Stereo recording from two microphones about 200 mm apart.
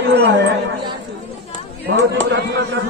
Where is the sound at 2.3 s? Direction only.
55° right (ahead or behind).